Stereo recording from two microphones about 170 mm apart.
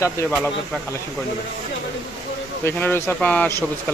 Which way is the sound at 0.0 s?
15° left (ahead or behind).